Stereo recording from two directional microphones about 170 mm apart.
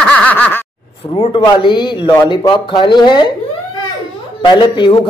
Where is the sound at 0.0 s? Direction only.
10° left (ahead or behind).